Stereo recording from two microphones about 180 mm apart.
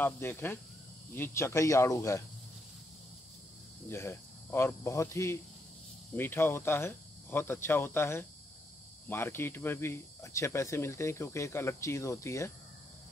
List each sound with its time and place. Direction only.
0.0 s speech: 10° left (ahead or behind)
3.9 s speech: 15° left (ahead or behind)